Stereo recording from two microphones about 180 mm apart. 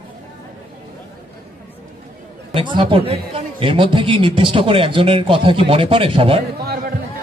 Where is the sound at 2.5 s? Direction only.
25° right (ahead or behind).